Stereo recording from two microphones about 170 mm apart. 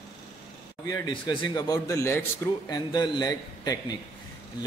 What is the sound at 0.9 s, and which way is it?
Speech, 25° left (ahead or behind).